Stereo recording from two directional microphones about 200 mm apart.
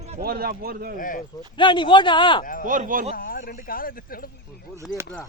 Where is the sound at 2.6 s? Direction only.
40° right (ahead or behind).